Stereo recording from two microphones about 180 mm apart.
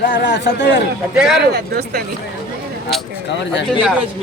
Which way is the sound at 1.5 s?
60° right (ahead or behind).